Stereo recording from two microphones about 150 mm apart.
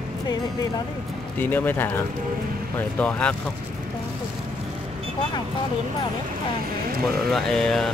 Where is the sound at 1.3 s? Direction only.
15° left (ahead or behind).